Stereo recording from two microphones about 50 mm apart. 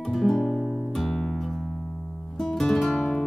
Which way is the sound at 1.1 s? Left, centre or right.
Centre.